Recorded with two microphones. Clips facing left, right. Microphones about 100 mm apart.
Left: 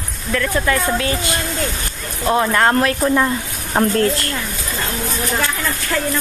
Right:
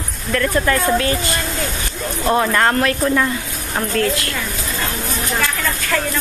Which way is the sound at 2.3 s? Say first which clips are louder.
Left 1 dB; 5° left (ahead or behind).